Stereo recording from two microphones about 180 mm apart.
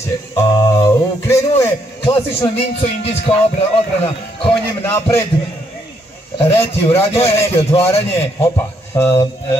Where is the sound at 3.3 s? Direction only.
30° left (ahead or behind).